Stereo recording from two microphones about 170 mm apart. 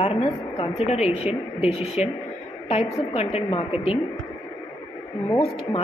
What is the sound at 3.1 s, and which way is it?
Speech, 40° left (ahead or behind).